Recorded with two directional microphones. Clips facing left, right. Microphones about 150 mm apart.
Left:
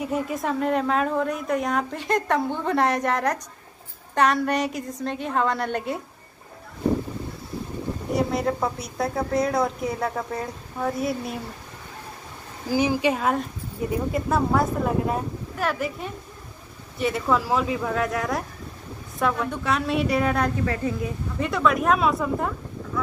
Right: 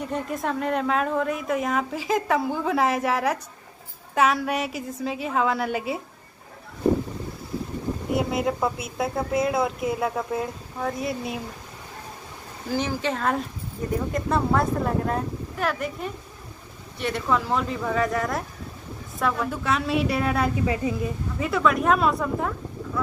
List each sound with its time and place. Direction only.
0.0 s a woman's voice: 5° left (ahead or behind)
8.1 s a woman's voice: centre (ahead or behind)
12.6 s a woman's voice: 10° left (ahead or behind); by 20.9 s 15° right (ahead or behind)
21.4 s a woman's voice: centre (ahead or behind)